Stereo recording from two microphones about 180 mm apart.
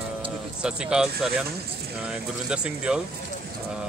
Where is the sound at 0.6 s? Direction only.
5° right (ahead or behind).